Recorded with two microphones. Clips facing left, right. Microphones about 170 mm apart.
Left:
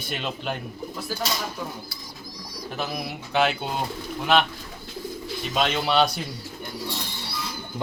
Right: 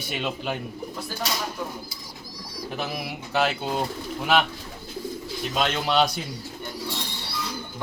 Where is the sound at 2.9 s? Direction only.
Centre (ahead or behind).